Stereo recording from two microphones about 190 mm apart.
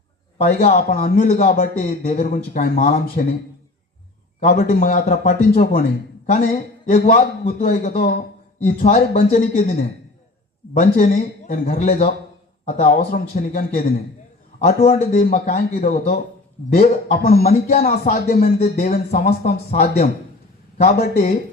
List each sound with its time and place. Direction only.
0.4 s a man's voice: 45° left (ahead or behind)
4.4 s a man's voice: 45° left (ahead or behind)
10.8 s a man's voice: 45° left (ahead or behind)
14.8 s a man's voice: 40° left (ahead or behind)
18.6 s speech: 40° left (ahead or behind)
18.9 s a man's voice: 55° left (ahead or behind)
19.4 s a man's voice: 35° left (ahead or behind)